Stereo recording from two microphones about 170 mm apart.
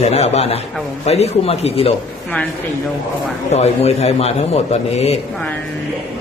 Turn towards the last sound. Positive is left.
turn(degrees=40)  # may be behind; listen again after turning